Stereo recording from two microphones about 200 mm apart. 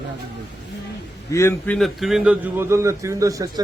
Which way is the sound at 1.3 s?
15° left (ahead or behind).